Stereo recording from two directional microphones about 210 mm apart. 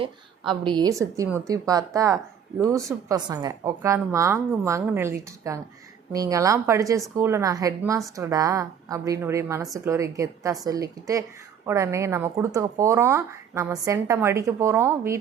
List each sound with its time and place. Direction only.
0.6 s speech: 20° right (ahead or behind)